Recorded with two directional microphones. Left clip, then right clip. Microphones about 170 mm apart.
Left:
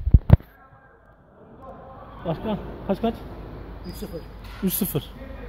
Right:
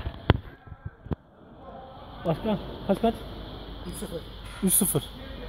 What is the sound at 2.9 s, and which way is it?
Speech, 35° right (ahead or behind).